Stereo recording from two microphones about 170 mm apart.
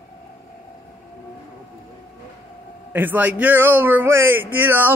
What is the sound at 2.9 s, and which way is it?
A man's voice, 10° right (ahead or behind).